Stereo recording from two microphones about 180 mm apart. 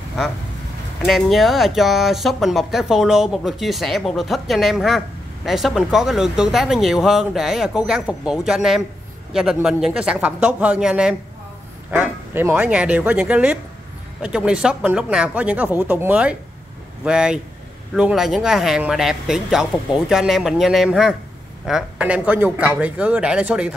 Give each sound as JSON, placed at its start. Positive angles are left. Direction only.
{"t": 1.0, "sound": "speech", "side_deg": 0}